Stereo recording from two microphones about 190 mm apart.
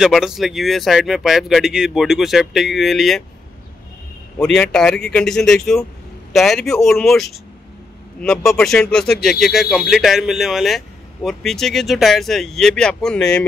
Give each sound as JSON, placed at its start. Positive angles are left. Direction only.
{"t": 0.0, "sound": "speech", "side_deg": 0}
{"t": 4.4, "sound": "speech", "side_deg": 5}